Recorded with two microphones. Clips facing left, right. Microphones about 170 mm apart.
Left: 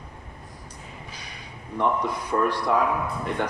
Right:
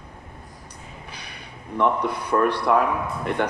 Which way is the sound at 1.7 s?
65° right (ahead or behind).